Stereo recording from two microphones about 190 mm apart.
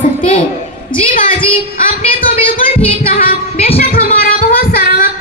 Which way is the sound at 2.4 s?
30° left (ahead or behind).